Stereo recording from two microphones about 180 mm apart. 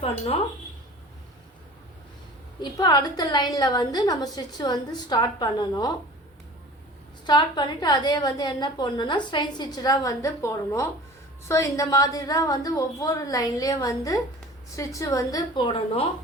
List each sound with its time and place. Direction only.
2.6 s a woman's voice: 20° left (ahead or behind)
7.3 s a woman's voice: 25° left (ahead or behind)